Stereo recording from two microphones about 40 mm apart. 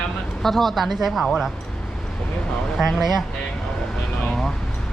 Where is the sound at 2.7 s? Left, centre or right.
Centre.